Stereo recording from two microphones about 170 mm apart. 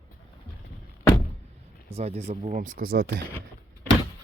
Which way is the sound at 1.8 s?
35° right (ahead or behind).